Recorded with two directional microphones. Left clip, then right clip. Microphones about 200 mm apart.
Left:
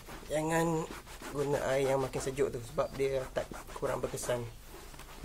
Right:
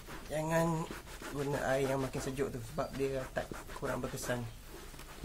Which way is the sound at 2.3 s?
35° left (ahead or behind).